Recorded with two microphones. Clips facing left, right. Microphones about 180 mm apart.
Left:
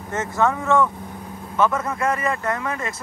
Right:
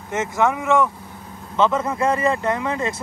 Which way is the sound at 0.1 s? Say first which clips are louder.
Right 1 dB; 20° right (ahead or behind).